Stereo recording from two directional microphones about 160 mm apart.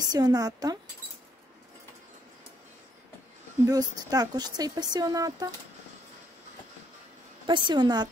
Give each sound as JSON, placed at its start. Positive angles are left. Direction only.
{"t": 0.0, "sound": "speech", "side_deg": -25}
{"t": 3.6, "sound": "speech", "side_deg": -25}
{"t": 7.4, "sound": "speech", "side_deg": -30}